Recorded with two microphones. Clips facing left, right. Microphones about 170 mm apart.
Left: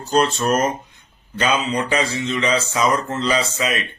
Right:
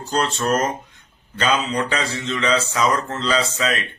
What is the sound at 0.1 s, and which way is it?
Speech, 10° left (ahead or behind).